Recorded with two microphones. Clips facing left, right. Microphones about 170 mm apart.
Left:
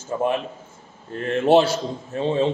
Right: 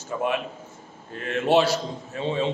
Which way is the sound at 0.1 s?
30° left (ahead or behind).